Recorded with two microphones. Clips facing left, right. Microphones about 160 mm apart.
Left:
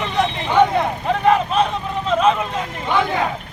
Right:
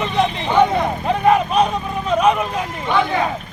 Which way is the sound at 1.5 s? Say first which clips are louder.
Right 2 dB; 15° right (ahead or behind).